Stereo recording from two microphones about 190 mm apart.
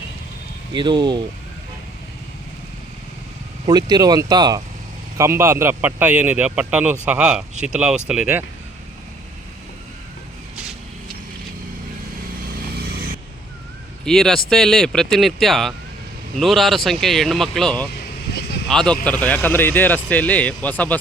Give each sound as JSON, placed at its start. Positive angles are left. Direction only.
{"t": 0.7, "sound": "speech", "side_deg": -25}
{"t": 3.7, "sound": "a man's voice", "side_deg": -20}
{"t": 12.8, "sound": "vehicle", "side_deg": -55}
{"t": 14.0, "sound": "speech", "side_deg": 0}
{"t": 18.3, "sound": "vehicle", "side_deg": 60}
{"t": 18.7, "sound": "speech", "side_deg": 5}